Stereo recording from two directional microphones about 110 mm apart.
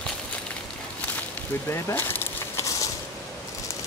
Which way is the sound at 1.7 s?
25° left (ahead or behind).